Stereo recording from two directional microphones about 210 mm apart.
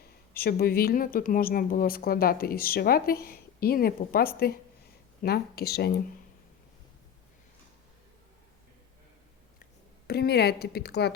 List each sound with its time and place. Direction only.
0.0 s speech: 45° left (ahead or behind)
10.1 s speech: 50° left (ahead or behind)